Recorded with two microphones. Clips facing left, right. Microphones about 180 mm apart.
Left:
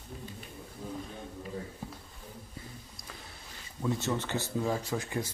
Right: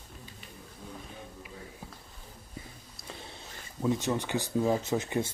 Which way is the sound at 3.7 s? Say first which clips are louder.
Right 3 dB; 15° right (ahead or behind).